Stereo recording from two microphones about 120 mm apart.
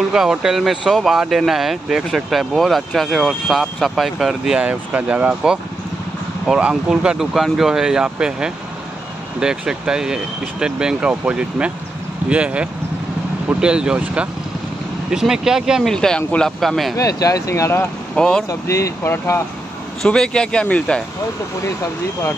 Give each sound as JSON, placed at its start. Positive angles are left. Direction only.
{"t": 0.1, "sound": "speech", "side_deg": -5}
{"t": 16.9, "sound": "speech", "side_deg": 30}
{"t": 18.1, "sound": "speech", "side_deg": 5}
{"t": 18.5, "sound": "speech", "side_deg": 25}
{"t": 20.0, "sound": "a man's voice", "side_deg": 5}